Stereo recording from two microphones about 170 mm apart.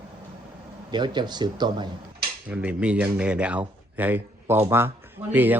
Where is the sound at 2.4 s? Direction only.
10° right (ahead or behind).